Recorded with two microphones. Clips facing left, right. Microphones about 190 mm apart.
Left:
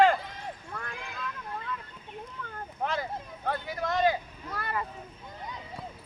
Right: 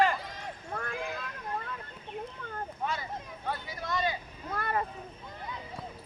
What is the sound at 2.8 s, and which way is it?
Speech, 55° left (ahead or behind).